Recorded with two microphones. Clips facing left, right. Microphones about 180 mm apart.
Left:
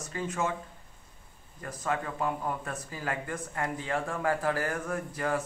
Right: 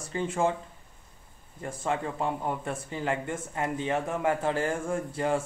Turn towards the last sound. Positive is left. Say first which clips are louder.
# right 3 dB
turn(degrees=-25)  # may be behind; listen again after turning